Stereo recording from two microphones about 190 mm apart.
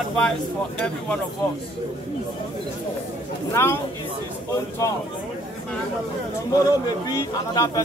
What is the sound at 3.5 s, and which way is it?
Speech, 15° left (ahead or behind).